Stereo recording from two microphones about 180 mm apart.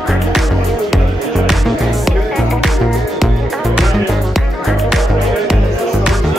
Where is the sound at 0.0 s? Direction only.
Centre (ahead or behind).